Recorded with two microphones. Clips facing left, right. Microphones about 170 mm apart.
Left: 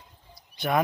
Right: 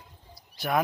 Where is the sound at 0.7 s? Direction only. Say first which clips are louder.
Left 2 dB; centre (ahead or behind).